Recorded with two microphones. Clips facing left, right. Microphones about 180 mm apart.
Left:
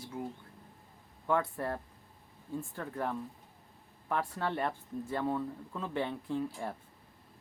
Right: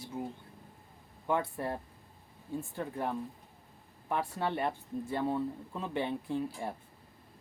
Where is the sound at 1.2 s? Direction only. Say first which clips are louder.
Left 1 dB; 20° right (ahead or behind).